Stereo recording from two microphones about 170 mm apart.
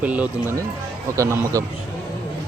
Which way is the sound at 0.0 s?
10° right (ahead or behind).